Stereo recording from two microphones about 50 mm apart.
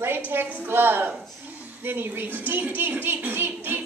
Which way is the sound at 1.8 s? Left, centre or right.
Right.